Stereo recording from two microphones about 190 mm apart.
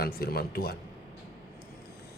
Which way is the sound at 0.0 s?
55° left (ahead or behind).